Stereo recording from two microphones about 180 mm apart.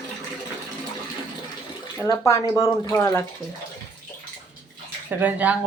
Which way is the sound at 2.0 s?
15° left (ahead or behind).